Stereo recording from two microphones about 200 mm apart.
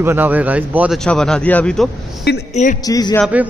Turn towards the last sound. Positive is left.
turn(degrees=20)  # may be behind; listen again after turning